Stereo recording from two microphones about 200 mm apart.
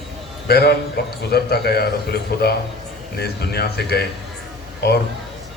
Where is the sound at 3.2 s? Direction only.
50° left (ahead or behind).